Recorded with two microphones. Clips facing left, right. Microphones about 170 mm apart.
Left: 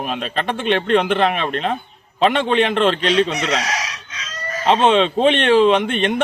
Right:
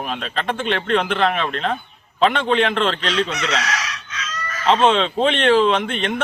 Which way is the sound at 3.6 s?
35° left (ahead or behind).